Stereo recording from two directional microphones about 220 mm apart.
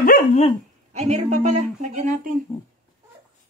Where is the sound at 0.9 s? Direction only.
30° right (ahead or behind).